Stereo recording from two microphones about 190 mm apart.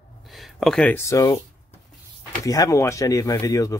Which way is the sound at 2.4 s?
20° left (ahead or behind).